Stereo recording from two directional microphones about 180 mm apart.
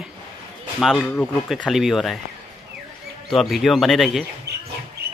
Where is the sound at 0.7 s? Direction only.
Centre (ahead or behind).